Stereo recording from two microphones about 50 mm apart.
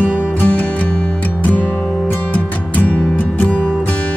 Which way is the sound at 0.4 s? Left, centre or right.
Left.